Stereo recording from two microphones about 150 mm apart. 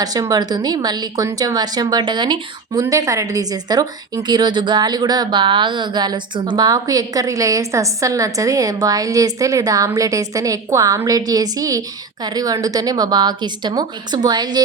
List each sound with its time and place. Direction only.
0.0 s a woman's voice: 25° right (ahead or behind)